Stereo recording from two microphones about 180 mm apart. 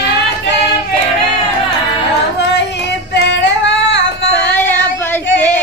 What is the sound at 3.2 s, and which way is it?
Female singing, 80° left.